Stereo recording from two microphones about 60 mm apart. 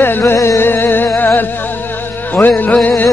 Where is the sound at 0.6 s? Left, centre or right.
Left.